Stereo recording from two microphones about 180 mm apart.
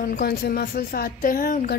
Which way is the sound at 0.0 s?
50° left (ahead or behind).